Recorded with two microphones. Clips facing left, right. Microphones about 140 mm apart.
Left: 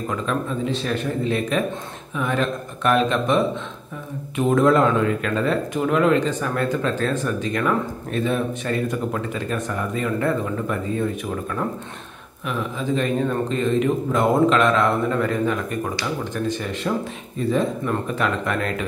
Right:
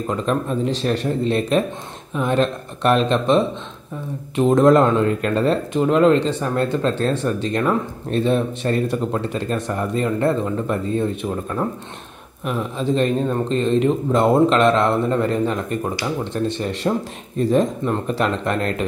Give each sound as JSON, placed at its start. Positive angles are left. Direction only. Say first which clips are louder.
{"t": 0.1, "sound": "speech", "louder": "right 4 dB", "side_deg": -35}
{"t": 4.4, "sound": "speech", "louder": "right 3 dB", "side_deg": -35}
{"t": 12.4, "sound": "speech", "louder": "right 3 dB", "side_deg": -30}
{"t": 17.4, "sound": "speech", "louder": "right 4 dB", "side_deg": -40}